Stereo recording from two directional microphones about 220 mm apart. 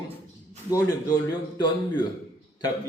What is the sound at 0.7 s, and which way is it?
A man's voice, 15° left (ahead or behind).